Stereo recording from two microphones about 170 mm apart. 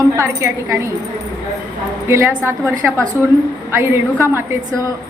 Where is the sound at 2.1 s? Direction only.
15° right (ahead or behind).